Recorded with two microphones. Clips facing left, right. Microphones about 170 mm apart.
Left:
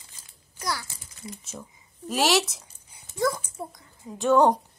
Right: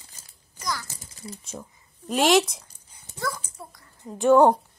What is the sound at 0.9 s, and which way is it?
Speech, 40° right (ahead or behind).